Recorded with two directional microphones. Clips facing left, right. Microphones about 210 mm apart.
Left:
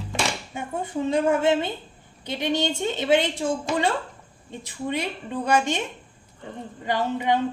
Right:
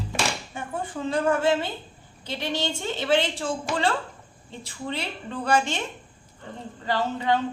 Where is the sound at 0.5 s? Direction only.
20° left (ahead or behind).